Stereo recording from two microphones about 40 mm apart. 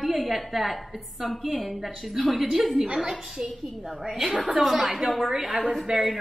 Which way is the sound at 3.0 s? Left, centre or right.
Centre.